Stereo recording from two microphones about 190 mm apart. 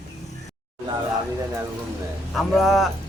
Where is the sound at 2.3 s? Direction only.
Centre (ahead or behind).